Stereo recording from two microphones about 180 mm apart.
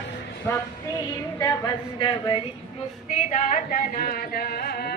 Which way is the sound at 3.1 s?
40° left (ahead or behind).